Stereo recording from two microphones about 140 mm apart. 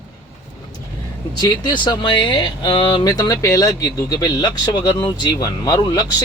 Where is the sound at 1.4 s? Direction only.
30° left (ahead or behind).